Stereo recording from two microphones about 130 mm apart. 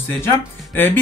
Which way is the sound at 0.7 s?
15° left (ahead or behind).